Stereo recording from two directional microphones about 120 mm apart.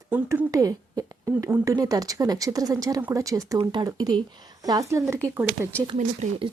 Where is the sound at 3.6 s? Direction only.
40° right (ahead or behind); by 5.7 s 20° right (ahead or behind).